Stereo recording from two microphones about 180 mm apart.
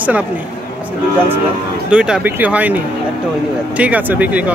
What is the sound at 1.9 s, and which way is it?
Speech, 5° right (ahead or behind).